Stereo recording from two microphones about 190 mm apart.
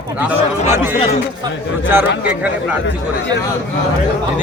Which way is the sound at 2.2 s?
5° right (ahead or behind).